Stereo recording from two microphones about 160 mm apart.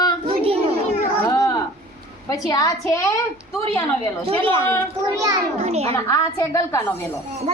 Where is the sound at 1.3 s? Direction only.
25° left (ahead or behind).